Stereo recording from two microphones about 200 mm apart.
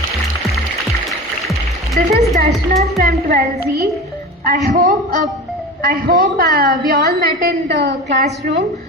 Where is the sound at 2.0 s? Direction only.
50° right (ahead or behind).